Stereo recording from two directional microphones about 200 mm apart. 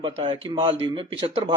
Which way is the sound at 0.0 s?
25° right (ahead or behind).